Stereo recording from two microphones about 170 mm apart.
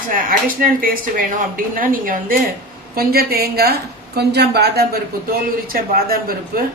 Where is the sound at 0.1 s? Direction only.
55° right (ahead or behind); by 4.9 s 70° right (ahead or behind).